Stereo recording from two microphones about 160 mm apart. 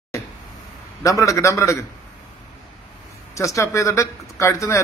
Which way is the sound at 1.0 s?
20° left (ahead or behind).